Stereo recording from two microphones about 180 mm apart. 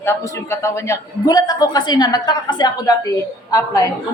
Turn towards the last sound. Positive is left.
turn(degrees=20)  # may be behind; listen again after turning